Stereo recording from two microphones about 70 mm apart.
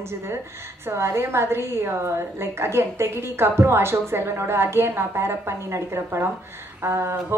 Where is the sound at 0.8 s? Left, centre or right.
Right.